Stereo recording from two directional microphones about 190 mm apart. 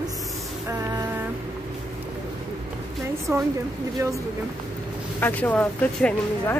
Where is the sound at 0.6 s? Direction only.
20° right (ahead or behind).